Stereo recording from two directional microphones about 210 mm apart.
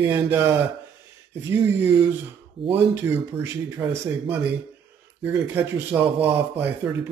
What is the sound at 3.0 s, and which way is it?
Speech, 10° right (ahead or behind).